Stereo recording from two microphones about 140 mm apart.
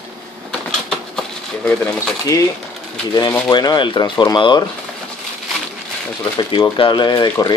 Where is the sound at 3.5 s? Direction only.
30° left (ahead or behind).